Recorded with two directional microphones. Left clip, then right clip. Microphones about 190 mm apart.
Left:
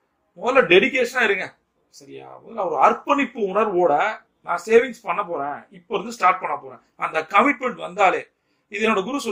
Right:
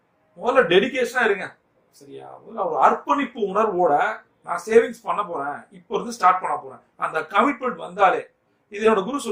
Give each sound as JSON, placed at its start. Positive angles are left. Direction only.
{"t": 0.3, "sound": "speech", "side_deg": 25}